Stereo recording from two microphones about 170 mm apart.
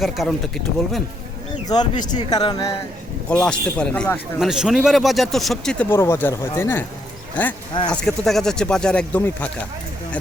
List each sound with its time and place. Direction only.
0.0 s speech: centre (ahead or behind)
1.6 s speech: 25° left (ahead or behind)
3.2 s speech: 5° left (ahead or behind)
7.9 s speech: 5° left (ahead or behind)